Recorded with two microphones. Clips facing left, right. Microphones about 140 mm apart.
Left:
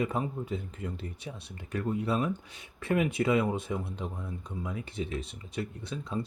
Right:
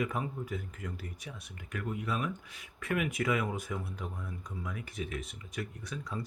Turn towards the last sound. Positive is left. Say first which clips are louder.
# left 5 dB
turn(degrees=25)  # may be behind; listen again after turning